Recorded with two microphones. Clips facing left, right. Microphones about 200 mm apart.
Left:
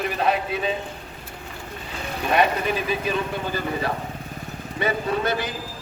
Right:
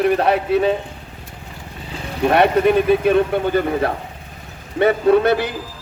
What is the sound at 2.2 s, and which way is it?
Speech, 60° right (ahead or behind).